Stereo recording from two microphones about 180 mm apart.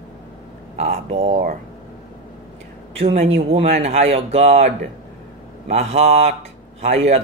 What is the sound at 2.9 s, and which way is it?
A man's voice, 35° right (ahead or behind).